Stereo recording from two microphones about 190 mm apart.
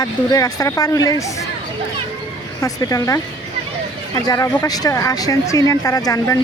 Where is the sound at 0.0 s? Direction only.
20° left (ahead or behind).